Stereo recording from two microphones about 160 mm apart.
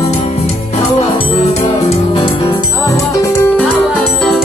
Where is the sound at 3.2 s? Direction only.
20° left (ahead or behind).